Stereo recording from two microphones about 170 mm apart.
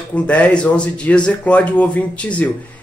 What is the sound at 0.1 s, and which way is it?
A man's voice, 10° left (ahead or behind).